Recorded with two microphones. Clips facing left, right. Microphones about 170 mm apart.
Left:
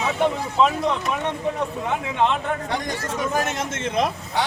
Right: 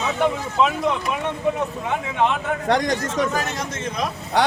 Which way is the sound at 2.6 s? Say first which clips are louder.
Right 6 dB; 85° right.